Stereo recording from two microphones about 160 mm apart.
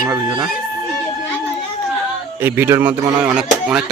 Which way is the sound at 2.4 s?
15° right (ahead or behind).